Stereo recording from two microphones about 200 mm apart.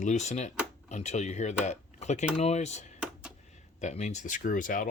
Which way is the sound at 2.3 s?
35° left (ahead or behind).